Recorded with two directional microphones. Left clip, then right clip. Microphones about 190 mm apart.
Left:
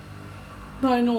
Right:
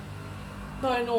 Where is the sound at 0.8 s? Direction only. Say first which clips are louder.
Left 5 dB; 40° left (ahead or behind).